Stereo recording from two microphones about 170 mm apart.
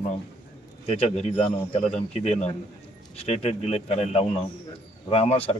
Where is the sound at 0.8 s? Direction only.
35° left (ahead or behind).